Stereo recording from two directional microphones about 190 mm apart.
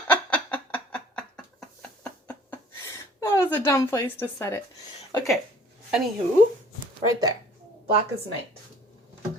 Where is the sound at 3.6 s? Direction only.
15° left (ahead or behind).